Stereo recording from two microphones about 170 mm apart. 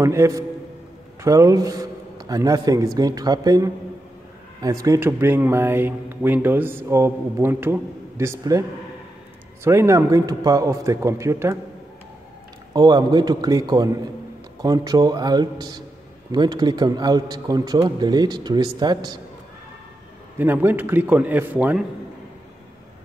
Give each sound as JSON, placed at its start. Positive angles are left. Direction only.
{"t": 0.0, "sound": "a man's voice", "side_deg": -15}
{"t": 12.7, "sound": "a man's voice", "side_deg": -25}
{"t": 20.3, "sound": "speech", "side_deg": -10}